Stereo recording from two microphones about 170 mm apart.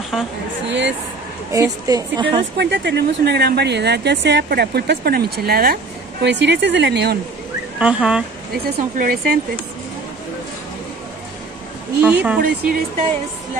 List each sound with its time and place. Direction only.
0.7 s speech: 90° right
1.5 s a woman's voice: 20° right (ahead or behind)
2.5 s speech: 90° right; by 5.8 s 65° right (ahead or behind)
6.2 s speech: 90° right
7.8 s speech: 5° right (ahead or behind)
8.6 s speech: 60° right (ahead or behind)
12.0 s speech: 10° right (ahead or behind)
12.4 s speech: 60° right (ahead or behind)